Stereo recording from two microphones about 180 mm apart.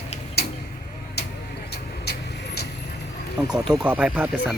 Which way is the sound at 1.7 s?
65° left (ahead or behind).